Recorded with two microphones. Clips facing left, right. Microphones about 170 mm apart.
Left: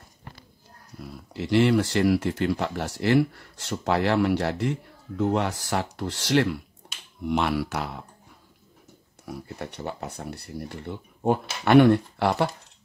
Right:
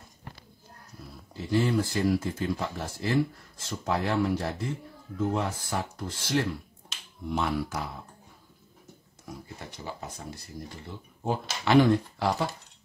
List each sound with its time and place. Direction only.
1.3 s speech: 80° left
9.3 s speech: 65° left (ahead or behind)